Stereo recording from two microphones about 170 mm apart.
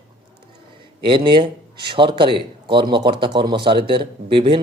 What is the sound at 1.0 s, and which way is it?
A man's voice, 30° right (ahead or behind).